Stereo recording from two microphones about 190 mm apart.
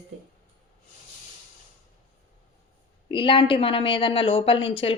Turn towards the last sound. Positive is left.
turn(degrees=30)  # may be behind; listen again after turning